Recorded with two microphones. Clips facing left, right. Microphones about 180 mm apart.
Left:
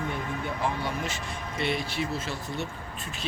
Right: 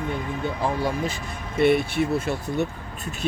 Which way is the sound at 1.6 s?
50° right (ahead or behind).